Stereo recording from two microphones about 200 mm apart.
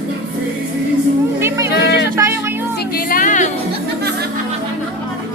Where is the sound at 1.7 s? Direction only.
60° left (ahead or behind).